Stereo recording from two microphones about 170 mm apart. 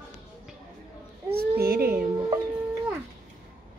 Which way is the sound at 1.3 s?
65° right (ahead or behind).